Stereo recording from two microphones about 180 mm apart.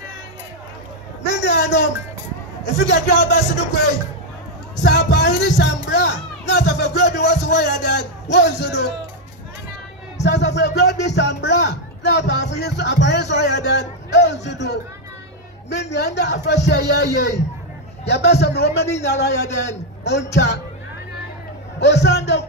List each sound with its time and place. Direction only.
1.2 s a sound: 75° left (ahead or behind)
2.6 s speech: 70° left (ahead or behind)
4.7 s a sound: 70° left (ahead or behind)
5.6 s speech: 70° left (ahead or behind)
10.2 s speech: 70° left (ahead or behind)
21.7 s a man's voice: 70° left (ahead or behind)